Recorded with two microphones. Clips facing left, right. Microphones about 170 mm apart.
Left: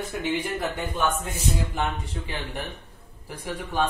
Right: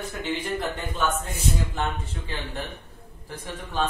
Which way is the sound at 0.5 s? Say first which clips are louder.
Left 1 dB; 10° left (ahead or behind).